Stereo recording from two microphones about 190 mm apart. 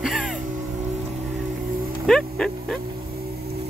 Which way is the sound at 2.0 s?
Centre (ahead or behind).